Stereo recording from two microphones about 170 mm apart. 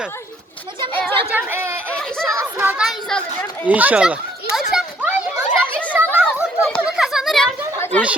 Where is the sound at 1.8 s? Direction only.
5° left (ahead or behind).